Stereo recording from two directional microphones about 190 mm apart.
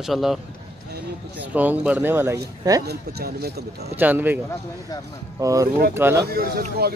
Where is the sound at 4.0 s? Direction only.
10° right (ahead or behind).